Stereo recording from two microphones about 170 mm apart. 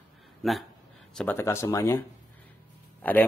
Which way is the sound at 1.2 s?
10° left (ahead or behind).